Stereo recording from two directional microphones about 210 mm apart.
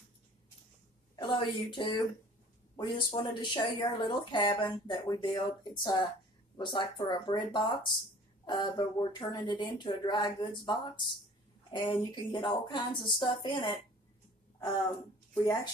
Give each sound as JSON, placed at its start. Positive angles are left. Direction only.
{"t": 1.1, "sound": "a woman's voice", "side_deg": 20}